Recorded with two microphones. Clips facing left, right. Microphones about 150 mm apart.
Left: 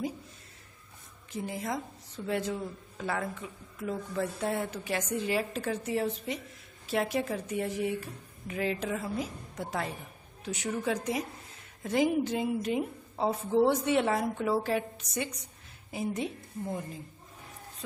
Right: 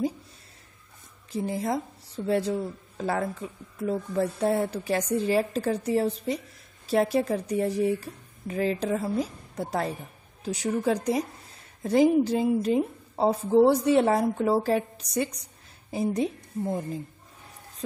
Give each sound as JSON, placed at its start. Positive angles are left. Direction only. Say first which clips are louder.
{"t": 1.3, "sound": "a woman's voice", "louder": "right 6 dB", "side_deg": -35}